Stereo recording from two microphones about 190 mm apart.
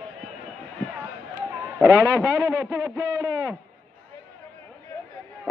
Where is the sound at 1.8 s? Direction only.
15° right (ahead or behind).